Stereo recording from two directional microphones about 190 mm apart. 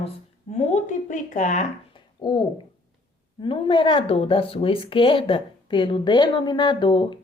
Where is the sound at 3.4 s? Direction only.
25° left (ahead or behind).